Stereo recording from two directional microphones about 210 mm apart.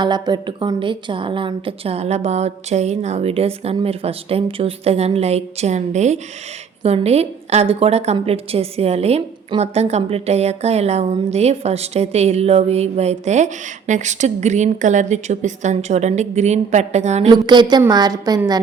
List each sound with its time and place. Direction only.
0.0 s a woman's voice: 20° right (ahead or behind)
17.3 s a woman's voice: 20° right (ahead or behind)